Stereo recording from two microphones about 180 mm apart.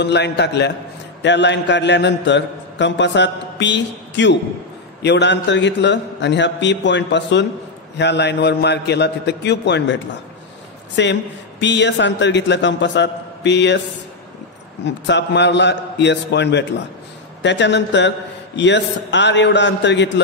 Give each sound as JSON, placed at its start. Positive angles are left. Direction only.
{"t": 0.0, "sound": "a man's voice", "side_deg": 70}
{"t": 11.0, "sound": "a man's voice", "side_deg": 80}
{"t": 14.9, "sound": "a man's voice", "side_deg": 75}